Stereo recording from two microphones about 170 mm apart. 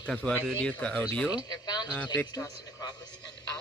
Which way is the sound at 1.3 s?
25° left (ahead or behind).